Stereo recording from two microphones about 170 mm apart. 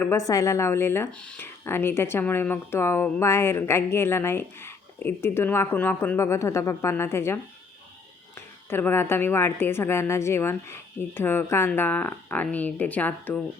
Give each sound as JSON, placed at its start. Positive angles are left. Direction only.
{"t": 0.0, "sound": "speech", "side_deg": 15}
{"t": 8.4, "sound": "speech", "side_deg": 10}